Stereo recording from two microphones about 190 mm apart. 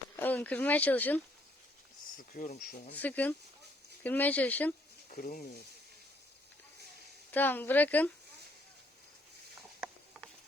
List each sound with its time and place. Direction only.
0.2 s speech: 10° left (ahead or behind)
2.3 s speech: 45° left (ahead or behind)
2.9 s speech: 10° left (ahead or behind)
5.0 s speech: 45° left (ahead or behind)
7.3 s speech: 10° left (ahead or behind)